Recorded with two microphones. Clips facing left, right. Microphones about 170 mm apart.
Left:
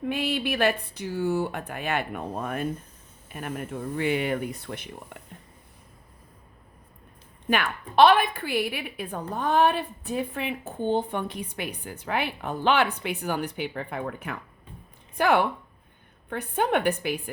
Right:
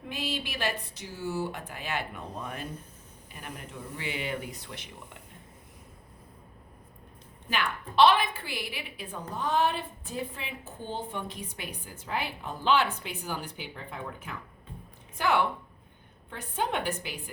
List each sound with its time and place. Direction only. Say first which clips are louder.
0.1 s a woman's voice: left 6 dB; 60° left (ahead or behind)
7.5 s a woman's voice: left 5 dB; 55° left (ahead or behind)